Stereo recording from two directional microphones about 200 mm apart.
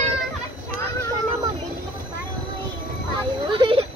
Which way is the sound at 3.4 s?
25° right (ahead or behind).